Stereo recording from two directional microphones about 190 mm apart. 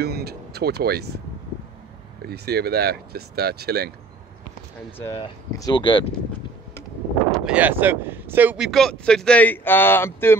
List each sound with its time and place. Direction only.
0.0 s speech: 55° right (ahead or behind)
2.2 s speech: 55° right (ahead or behind)
4.9 s speech: 15° left (ahead or behind)
7.2 s wind noise: 5° left (ahead or behind)
7.5 s speech: 10° right (ahead or behind); by 10.3 s 10° left (ahead or behind)